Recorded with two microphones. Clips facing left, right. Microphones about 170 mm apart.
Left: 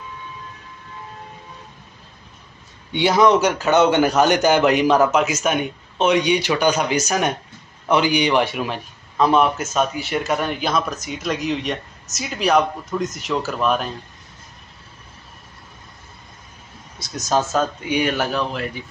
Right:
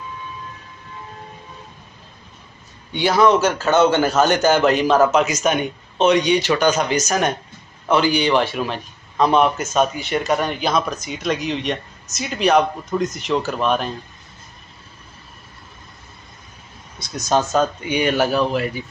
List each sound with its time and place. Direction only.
2.9 s a man's voice: 20° left (ahead or behind); by 13.9 s 5° left (ahead or behind)
17.0 s a man's voice: centre (ahead or behind)